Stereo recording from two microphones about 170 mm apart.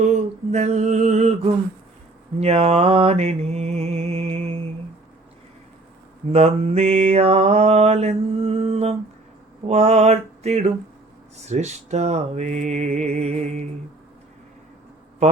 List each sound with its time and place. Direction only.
0.0 s a sound: 40° right (ahead or behind)
2.4 s mantra: 35° right (ahead or behind)
6.3 s mantra: 35° right (ahead or behind)